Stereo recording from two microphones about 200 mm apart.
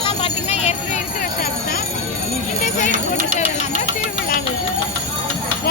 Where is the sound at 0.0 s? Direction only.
30° left (ahead or behind).